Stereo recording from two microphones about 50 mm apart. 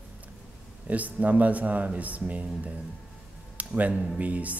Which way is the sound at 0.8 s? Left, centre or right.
Right.